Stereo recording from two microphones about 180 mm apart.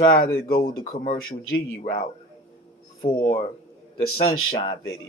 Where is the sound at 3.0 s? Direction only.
30° left (ahead or behind).